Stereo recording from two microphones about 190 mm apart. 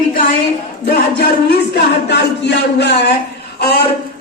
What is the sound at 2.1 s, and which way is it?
Speech, 60° left (ahead or behind).